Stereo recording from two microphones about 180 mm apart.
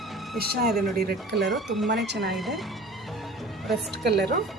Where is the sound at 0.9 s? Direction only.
65° right (ahead or behind).